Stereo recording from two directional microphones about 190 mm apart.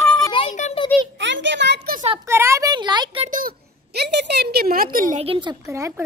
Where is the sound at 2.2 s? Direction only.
15° right (ahead or behind).